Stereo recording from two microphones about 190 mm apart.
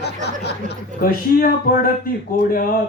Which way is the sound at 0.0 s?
60° left (ahead or behind).